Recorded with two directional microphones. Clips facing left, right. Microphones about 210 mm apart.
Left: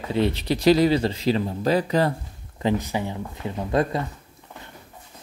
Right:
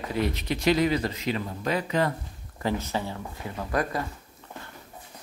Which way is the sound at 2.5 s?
20° left (ahead or behind).